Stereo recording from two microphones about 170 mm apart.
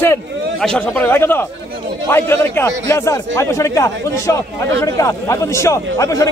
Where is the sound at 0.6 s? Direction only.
5° left (ahead or behind).